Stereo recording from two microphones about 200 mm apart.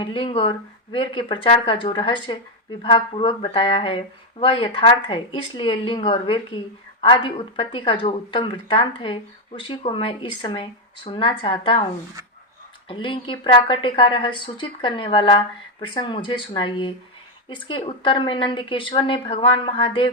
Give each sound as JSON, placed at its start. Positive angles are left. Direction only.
{"t": 0.0, "sound": "a woman's voice", "side_deg": 25}
{"t": 12.9, "sound": "a woman's voice", "side_deg": 25}